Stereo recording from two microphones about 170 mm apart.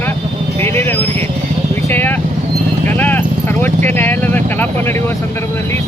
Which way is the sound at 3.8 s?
10° left (ahead or behind).